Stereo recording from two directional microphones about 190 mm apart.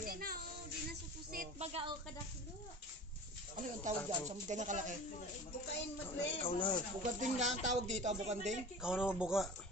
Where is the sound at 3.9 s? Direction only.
40° right (ahead or behind).